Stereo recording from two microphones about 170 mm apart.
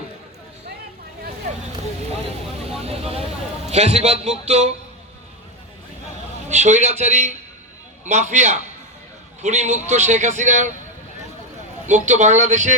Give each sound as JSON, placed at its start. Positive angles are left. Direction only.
{"t": 2.8, "sound": "vehicle", "side_deg": -35}
{"t": 3.7, "sound": "a man's voice", "side_deg": -40}
{"t": 6.5, "sound": "a man's voice", "side_deg": -45}
{"t": 11.9, "sound": "a man's voice", "side_deg": -45}